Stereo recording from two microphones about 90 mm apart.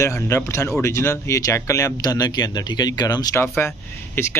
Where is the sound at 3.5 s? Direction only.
25° left (ahead or behind).